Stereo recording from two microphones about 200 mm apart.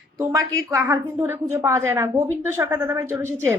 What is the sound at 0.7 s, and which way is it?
Speech, 15° right (ahead or behind).